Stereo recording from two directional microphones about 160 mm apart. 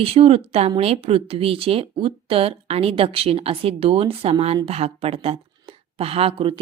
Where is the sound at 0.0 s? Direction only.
40° right (ahead or behind).